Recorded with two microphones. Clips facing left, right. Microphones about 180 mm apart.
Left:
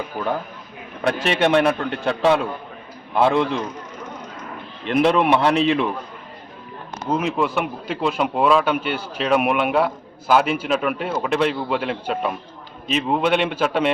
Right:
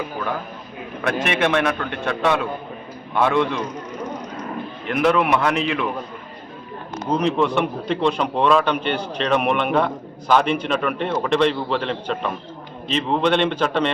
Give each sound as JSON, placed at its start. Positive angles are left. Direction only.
{"t": 1.0, "sound": "a man's voice", "side_deg": 30}
{"t": 4.9, "sound": "a man's voice", "side_deg": 30}
{"t": 7.1, "sound": "a man's voice", "side_deg": 5}